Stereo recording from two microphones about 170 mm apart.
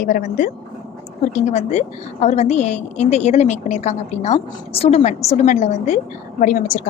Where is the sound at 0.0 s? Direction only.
50° left (ahead or behind).